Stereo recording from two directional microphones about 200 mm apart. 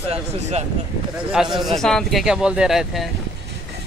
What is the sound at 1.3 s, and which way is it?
Speech, centre (ahead or behind).